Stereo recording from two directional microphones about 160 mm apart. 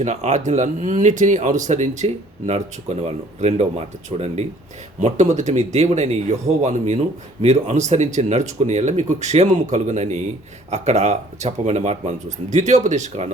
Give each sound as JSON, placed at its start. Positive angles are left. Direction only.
{"t": 0.0, "sound": "speech", "side_deg": -45}